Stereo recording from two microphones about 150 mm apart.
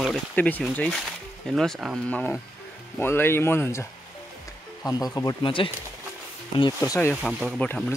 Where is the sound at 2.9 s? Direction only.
15° left (ahead or behind); by 5.7 s 35° left (ahead or behind).